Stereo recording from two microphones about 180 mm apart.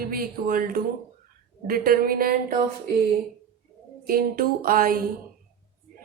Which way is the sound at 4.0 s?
55° right (ahead or behind).